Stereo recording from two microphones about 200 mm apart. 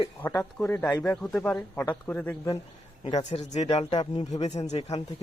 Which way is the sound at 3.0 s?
30° left (ahead or behind).